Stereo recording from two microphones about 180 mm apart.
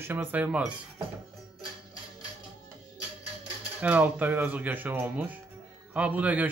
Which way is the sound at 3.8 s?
10° right (ahead or behind).